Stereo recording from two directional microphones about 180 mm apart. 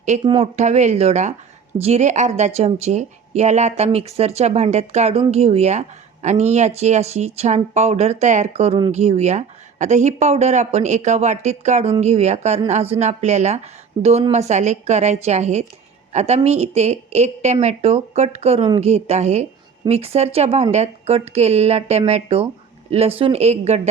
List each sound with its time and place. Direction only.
0.3 s speech: 35° right (ahead or behind)